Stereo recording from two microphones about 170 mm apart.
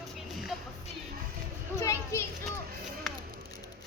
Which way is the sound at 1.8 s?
15° left (ahead or behind).